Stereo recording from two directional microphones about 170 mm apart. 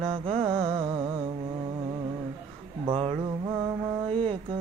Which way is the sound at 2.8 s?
35° right (ahead or behind).